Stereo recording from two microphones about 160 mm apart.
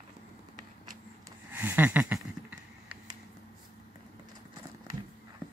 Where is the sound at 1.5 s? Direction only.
10° right (ahead or behind).